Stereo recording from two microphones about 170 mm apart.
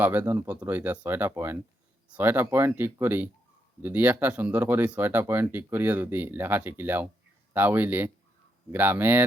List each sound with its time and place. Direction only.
0.0 s speech: 10° right (ahead or behind)